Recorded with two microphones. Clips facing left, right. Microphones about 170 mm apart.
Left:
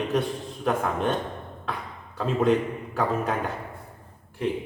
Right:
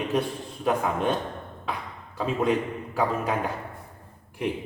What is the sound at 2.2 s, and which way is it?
Speech, centre (ahead or behind).